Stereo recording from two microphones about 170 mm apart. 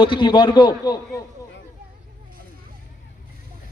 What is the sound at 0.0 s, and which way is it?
A man's voice, 30° left (ahead or behind).